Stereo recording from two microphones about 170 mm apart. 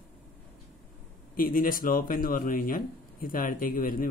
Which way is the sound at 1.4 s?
55° left (ahead or behind).